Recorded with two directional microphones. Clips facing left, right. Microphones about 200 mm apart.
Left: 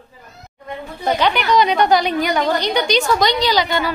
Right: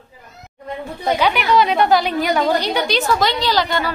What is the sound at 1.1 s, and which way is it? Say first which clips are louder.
A woman's voice: even; 5° right (ahead or behind).